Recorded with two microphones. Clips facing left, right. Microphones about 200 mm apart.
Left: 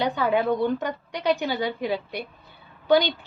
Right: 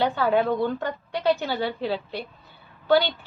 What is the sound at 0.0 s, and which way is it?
A woman's voice, 15° left (ahead or behind).